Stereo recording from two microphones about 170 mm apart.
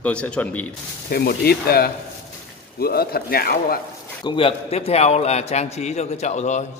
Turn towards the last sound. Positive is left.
turn(degrees=40)  # may be behind; listen again after turning